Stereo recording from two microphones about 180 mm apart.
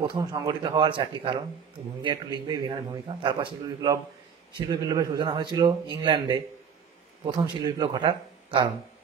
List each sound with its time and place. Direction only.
0.0 s a man's voice: 25° right (ahead or behind)